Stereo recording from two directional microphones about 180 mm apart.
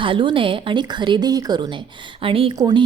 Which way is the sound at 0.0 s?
30° right (ahead or behind).